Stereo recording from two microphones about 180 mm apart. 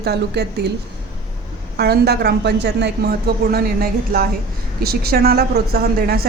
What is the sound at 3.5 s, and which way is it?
A woman's voice, 55° right (ahead or behind).